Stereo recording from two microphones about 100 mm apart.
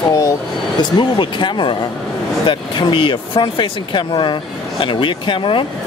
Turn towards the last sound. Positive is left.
turn(degrees=55)  # may be behind; listen again after turning